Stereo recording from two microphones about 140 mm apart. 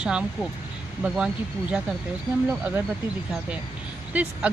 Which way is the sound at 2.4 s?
15° right (ahead or behind).